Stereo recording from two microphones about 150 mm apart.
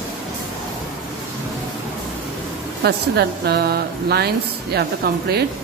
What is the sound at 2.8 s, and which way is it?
Speech, 90° right.